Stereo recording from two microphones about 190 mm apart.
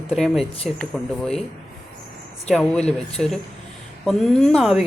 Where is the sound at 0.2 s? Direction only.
Centre (ahead or behind).